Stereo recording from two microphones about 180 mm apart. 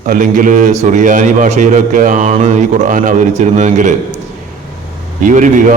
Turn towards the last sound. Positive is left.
turn(degrees=-45)  # may be behind; listen again after turning